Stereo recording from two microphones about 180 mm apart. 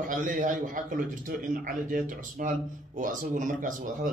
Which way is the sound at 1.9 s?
50° right (ahead or behind).